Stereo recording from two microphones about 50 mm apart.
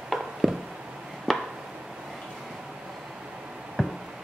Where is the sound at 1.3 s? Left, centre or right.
Centre.